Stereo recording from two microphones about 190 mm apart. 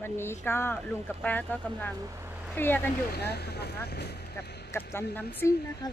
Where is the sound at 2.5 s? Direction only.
10° left (ahead or behind).